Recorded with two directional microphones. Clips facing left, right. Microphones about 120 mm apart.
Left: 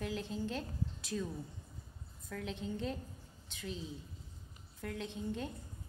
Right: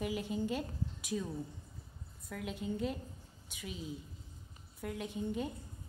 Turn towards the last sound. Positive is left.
turn(degrees=-10)  # may be behind; listen again after turning